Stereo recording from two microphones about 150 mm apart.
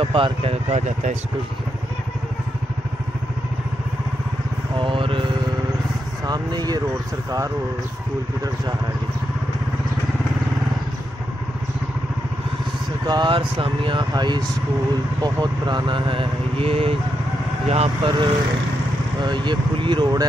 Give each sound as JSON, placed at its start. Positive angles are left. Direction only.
{"t": 0.0, "sound": "speech", "side_deg": -35}
{"t": 4.7, "sound": "vehicle", "side_deg": -35}
{"t": 6.2, "sound": "speech", "side_deg": -25}
{"t": 13.0, "sound": "speech", "side_deg": -30}